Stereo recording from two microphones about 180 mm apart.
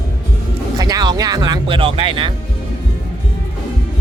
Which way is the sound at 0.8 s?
20° right (ahead or behind).